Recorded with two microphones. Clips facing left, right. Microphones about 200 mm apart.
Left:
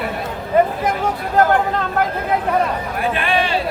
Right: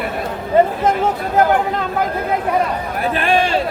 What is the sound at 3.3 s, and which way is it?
Speech, 45° right (ahead or behind).